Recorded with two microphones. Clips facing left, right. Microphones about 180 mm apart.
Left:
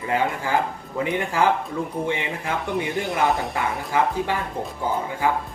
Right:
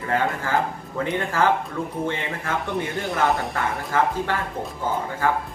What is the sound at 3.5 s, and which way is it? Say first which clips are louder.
Speech: even; 15° left (ahead or behind).